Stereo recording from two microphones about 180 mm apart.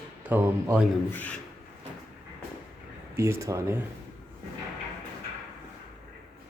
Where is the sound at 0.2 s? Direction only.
10° right (ahead or behind).